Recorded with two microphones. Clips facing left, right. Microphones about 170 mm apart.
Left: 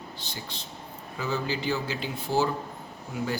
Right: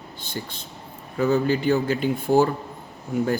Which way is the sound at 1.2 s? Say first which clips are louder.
Right 10 dB; 55° right (ahead or behind).